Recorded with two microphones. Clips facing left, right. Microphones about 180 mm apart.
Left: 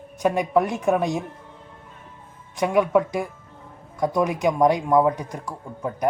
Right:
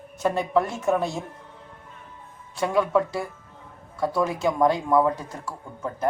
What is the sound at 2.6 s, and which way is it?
Speech, 15° left (ahead or behind).